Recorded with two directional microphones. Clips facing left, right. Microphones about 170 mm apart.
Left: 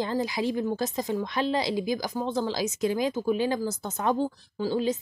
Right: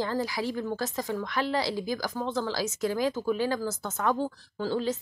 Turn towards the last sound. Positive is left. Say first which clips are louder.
# left 2 dB
turn(degrees=15)  # may be behind; listen again after turning